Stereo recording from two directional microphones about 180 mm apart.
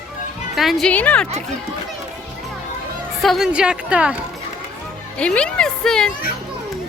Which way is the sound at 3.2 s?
Centre (ahead or behind).